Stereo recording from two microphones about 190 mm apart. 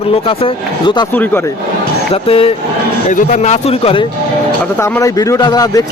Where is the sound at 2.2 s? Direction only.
30° left (ahead or behind).